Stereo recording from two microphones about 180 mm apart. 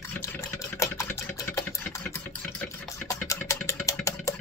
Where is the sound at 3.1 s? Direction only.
15° left (ahead or behind).